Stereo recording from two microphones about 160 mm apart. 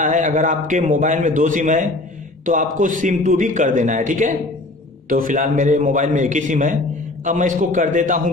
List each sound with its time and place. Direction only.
0.0 s a man's voice: 50° right (ahead or behind)